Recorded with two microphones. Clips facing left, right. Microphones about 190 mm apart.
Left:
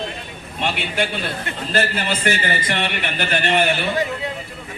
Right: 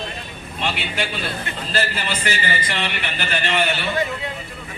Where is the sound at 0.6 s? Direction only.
50° left (ahead or behind).